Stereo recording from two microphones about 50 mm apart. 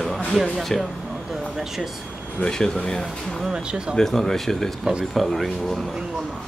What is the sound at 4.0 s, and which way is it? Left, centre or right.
Speech, centre.